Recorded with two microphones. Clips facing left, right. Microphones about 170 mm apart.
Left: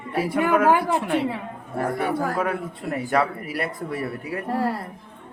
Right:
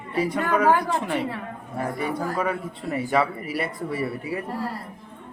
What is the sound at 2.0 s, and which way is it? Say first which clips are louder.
Speech: left 2 dB; 60° left (ahead or behind).